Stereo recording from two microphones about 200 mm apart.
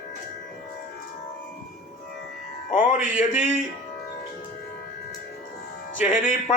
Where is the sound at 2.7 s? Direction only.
40° left (ahead or behind).